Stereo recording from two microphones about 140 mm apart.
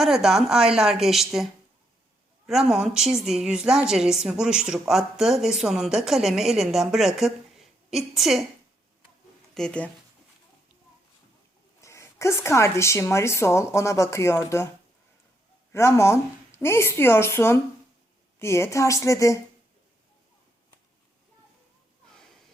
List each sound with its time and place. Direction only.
0.0 s speech: 5° right (ahead or behind)
2.5 s speech: 5° right (ahead or behind)
9.6 s speech: 5° left (ahead or behind)
11.8 s speech: 20° left (ahead or behind)
15.7 s speech: 20° left (ahead or behind)